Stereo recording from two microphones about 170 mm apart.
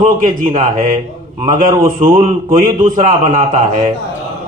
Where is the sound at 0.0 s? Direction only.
50° right (ahead or behind).